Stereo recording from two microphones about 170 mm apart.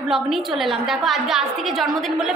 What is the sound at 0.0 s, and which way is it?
A woman's voice, centre (ahead or behind).